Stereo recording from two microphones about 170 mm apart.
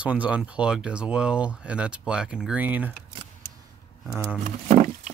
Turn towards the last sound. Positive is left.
turn(degrees=-45)  # may be behind; listen again after turning